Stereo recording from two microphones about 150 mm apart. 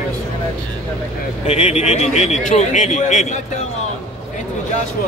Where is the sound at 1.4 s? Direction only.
45° left (ahead or behind).